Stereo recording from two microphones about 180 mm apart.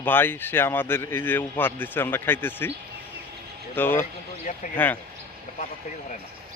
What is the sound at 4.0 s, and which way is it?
Speech, 45° left (ahead or behind).